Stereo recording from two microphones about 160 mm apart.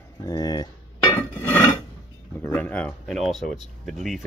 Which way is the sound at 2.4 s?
10° left (ahead or behind).